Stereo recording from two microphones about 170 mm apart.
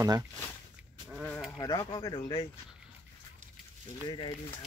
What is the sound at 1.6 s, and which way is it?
Speech, 20° left (ahead or behind).